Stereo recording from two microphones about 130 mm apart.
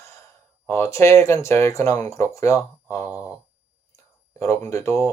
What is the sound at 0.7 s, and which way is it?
Speech, 20° left (ahead or behind).